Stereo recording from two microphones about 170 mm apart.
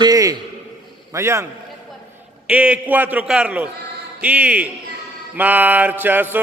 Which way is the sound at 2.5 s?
5° right (ahead or behind).